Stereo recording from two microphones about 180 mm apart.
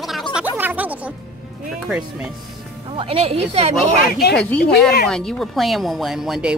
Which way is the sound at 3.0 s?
35° right (ahead or behind).